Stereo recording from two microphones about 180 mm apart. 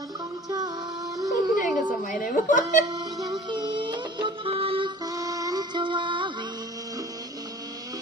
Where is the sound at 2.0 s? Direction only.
50° left (ahead or behind).